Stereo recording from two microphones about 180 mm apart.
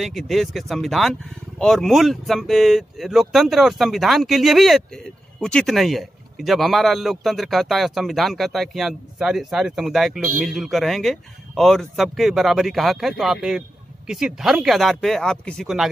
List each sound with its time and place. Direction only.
0.0 s speech: centre (ahead or behind)